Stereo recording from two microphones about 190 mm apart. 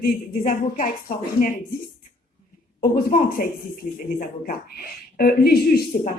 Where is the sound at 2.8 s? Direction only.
50° left (ahead or behind).